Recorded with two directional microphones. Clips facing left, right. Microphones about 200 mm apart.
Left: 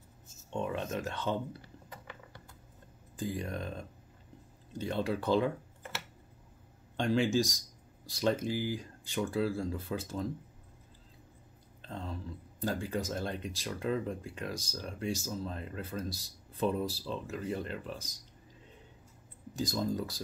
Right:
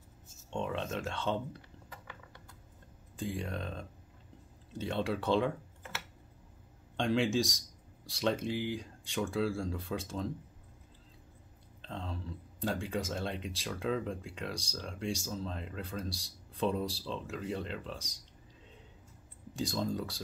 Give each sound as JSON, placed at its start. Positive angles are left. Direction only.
{"t": 0.5, "sound": "speech", "side_deg": 5}
{"t": 3.2, "sound": "speech", "side_deg": 0}
{"t": 7.0, "sound": "speech", "side_deg": 0}
{"t": 11.8, "sound": "speech", "side_deg": 5}
{"t": 19.5, "sound": "speech", "side_deg": 0}